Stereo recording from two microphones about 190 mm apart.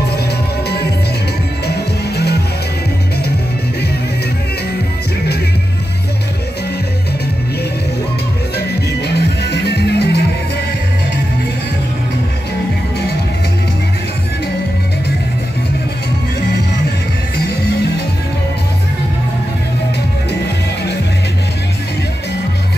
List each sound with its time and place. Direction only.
1.7 s music: 60° left (ahead or behind)
8.5 s music: 60° left (ahead or behind)